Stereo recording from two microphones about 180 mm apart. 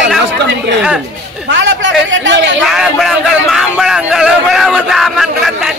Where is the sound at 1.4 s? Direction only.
85° right.